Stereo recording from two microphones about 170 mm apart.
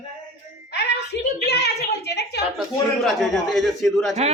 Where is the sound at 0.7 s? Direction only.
85° left.